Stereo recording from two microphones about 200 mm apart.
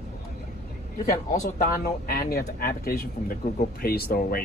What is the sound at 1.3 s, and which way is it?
Speech, 45° left (ahead or behind).